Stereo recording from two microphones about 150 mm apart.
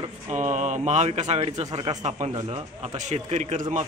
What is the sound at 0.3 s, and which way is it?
Speech, 55° right (ahead or behind).